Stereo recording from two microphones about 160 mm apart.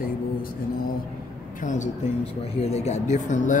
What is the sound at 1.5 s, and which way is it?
Speech, 50° left (ahead or behind).